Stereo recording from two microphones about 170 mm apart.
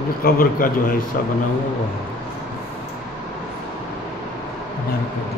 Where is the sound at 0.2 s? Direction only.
55° left (ahead or behind).